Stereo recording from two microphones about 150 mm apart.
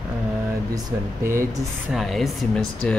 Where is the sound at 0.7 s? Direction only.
25° right (ahead or behind).